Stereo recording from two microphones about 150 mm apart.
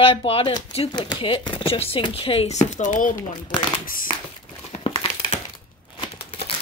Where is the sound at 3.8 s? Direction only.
70° left (ahead or behind).